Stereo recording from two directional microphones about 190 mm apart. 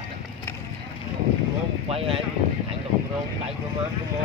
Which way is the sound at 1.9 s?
30° right (ahead or behind).